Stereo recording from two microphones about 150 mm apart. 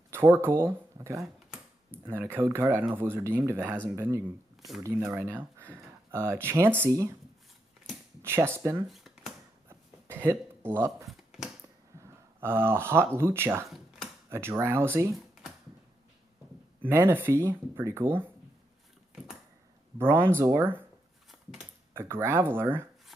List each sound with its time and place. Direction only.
0.1 s speech: 15° right (ahead or behind)
6.4 s speech: 15° right (ahead or behind)
8.2 s speech: 15° right (ahead or behind)
8.8 s a sound: centre (ahead or behind)
9.7 s a sound: 15° right (ahead or behind)
11.1 s a sound: centre (ahead or behind)
12.0 s speech: 15° right (ahead or behind)
13.7 s a sound: centre (ahead or behind)
14.3 s speech: 15° right (ahead or behind)
16.8 s speech: 15° right (ahead or behind)
20.0 s speech: 15° right (ahead or behind)
21.9 s speech: 15° right (ahead or behind)